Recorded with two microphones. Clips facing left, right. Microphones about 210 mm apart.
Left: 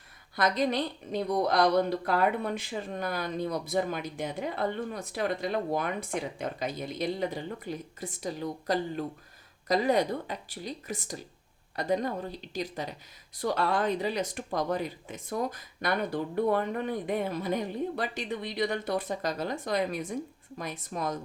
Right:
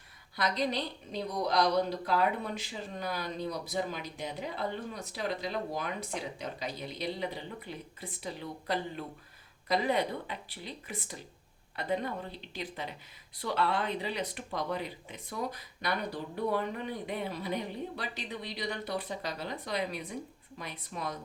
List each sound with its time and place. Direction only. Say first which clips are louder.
0.3 s speech: left 4 dB; 50° left (ahead or behind)